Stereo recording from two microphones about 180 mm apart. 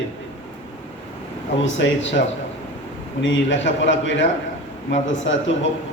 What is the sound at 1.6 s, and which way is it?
Speech, 90° left.